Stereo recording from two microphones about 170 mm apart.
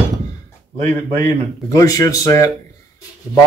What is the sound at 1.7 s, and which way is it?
Speech, 20° left (ahead or behind).